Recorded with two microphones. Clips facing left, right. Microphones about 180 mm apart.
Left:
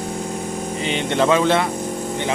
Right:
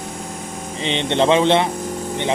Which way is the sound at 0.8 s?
25° right (ahead or behind).